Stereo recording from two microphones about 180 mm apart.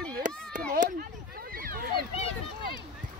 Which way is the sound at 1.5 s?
55° right (ahead or behind).